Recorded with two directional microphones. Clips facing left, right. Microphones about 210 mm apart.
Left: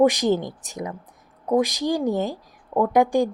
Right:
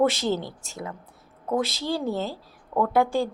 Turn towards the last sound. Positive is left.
turn(degrees=15)  # may be behind; listen again after turning